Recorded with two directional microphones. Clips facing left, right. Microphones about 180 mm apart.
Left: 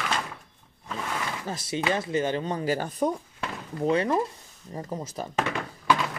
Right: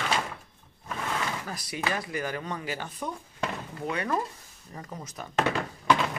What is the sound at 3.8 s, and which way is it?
Speech, 30° left (ahead or behind).